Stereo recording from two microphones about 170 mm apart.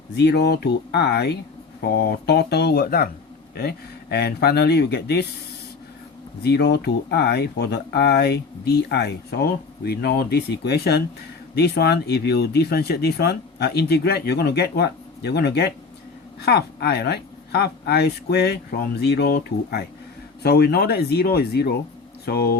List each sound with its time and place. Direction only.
0.2 s speech: 80° left
6.4 s speech: 75° left (ahead or behind)